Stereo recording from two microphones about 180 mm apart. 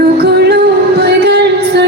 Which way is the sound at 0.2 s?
65° right (ahead or behind).